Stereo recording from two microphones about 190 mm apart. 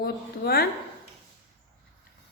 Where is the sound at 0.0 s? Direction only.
55° left (ahead or behind).